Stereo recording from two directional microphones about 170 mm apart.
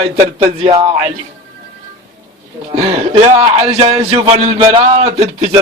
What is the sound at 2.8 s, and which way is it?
Speech, 40° right (ahead or behind).